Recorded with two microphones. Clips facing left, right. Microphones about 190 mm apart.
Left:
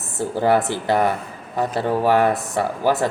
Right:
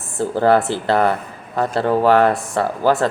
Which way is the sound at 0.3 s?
15° left (ahead or behind).